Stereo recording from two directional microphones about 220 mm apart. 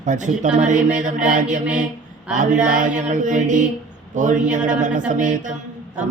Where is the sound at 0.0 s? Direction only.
35° right (ahead or behind).